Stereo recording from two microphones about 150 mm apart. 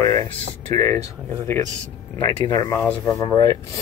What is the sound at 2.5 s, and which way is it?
Speech, 25° left (ahead or behind).